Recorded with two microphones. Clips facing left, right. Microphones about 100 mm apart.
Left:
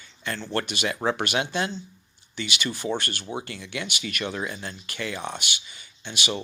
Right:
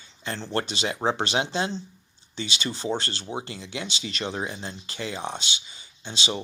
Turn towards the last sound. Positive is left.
turn(degrees=-25)  # may be behind; listen again after turning